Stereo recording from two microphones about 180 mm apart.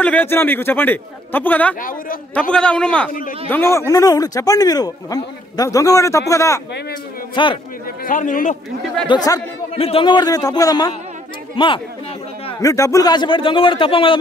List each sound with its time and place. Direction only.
0.0 s a man's voice: 10° left (ahead or behind)
1.8 s a man's voice: 50° left (ahead or behind)
2.5 s a man's voice: 5° left (ahead or behind)
3.1 s a man's voice: 50° left (ahead or behind)
3.4 s speech: 15° left (ahead or behind)
8.0 s a man's voice: 45° left (ahead or behind)
9.0 s speech: 25° left (ahead or behind)